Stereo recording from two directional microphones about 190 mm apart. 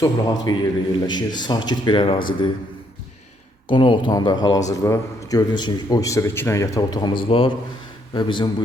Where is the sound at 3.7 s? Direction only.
25° left (ahead or behind).